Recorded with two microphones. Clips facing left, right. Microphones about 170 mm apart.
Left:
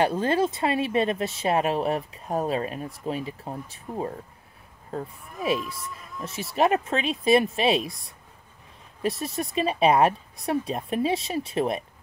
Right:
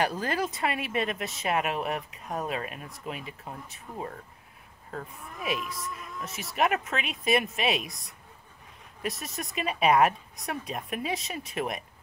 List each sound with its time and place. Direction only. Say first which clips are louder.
0.0 s speech: left 6 dB; 25° left (ahead or behind)